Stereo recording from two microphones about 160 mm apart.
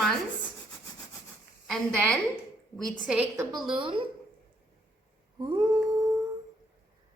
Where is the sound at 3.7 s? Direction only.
30° right (ahead or behind).